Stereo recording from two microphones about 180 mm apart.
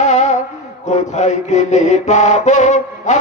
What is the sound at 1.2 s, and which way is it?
Mantra, 40° left (ahead or behind).